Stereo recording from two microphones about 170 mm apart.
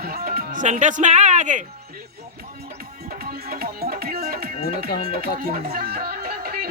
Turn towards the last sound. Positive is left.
turn(degrees=-60)  # may be behind; listen again after turning